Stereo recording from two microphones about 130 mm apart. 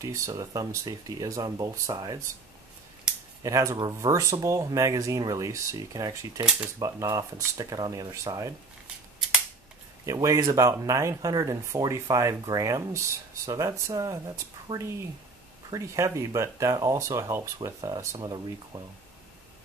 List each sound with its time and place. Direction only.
0.0 s speech: 25° right (ahead or behind)
3.4 s speech: 25° right (ahead or behind)
10.0 s speech: 25° right (ahead or behind)